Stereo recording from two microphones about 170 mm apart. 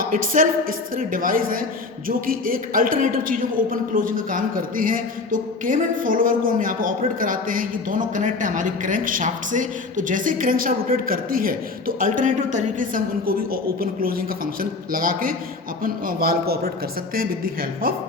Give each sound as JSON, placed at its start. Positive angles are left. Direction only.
{"t": 0.0, "sound": "a woman's voice", "side_deg": -55}